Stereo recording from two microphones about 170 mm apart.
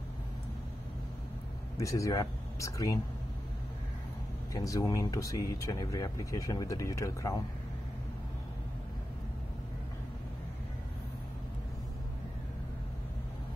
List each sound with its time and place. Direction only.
1.8 s speech: 20° left (ahead or behind)
4.6 s speech: 20° left (ahead or behind)